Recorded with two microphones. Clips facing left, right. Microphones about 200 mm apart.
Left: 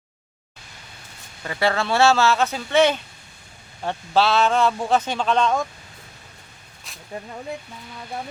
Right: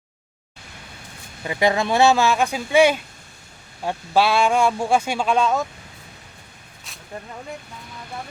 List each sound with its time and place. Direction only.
1.5 s speech: 15° right (ahead or behind)